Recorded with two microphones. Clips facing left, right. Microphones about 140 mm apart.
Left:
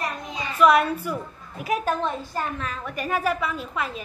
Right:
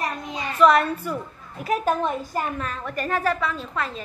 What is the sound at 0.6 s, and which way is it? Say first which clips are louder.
A woman's voice: right 1 dB; 5° left (ahead or behind).